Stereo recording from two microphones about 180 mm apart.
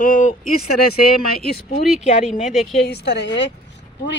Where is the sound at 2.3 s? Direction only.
Centre (ahead or behind).